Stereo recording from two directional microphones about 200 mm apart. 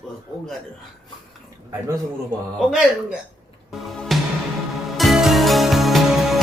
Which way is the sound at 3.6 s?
Centre (ahead or behind).